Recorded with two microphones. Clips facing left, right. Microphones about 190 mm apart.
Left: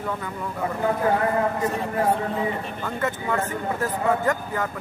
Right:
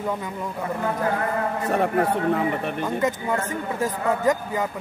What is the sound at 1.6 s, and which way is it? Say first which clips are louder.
A man's voice: right 2 dB; 65° right (ahead or behind).